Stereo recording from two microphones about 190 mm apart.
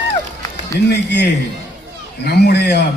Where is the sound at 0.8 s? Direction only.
65° left (ahead or behind).